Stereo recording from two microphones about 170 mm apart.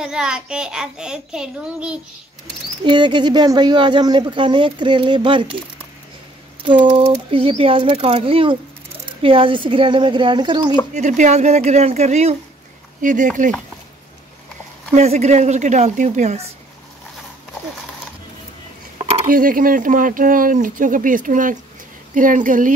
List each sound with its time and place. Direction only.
0.0 s a child's voice: 5° right (ahead or behind)
2.8 s speech: 25° right (ahead or behind)
6.9 s speech: 30° right (ahead or behind)
10.9 s speech: 45° right (ahead or behind)
15.0 s speech: 40° right (ahead or behind)
19.2 s speech: 55° right (ahead or behind)